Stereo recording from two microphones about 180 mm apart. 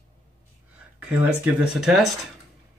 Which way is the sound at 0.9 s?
10° right (ahead or behind).